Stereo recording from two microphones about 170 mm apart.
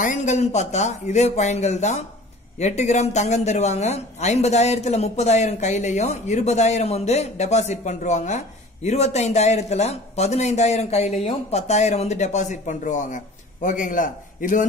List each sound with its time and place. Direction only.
0.0 s speech: 45° left (ahead or behind)